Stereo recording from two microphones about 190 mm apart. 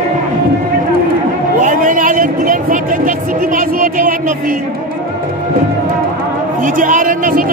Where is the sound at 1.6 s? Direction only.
45° right (ahead or behind).